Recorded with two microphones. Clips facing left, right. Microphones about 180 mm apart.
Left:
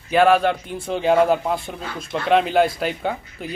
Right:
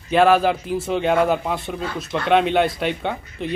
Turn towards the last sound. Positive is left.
turn(degrees=0)  # may be behind; listen again after turning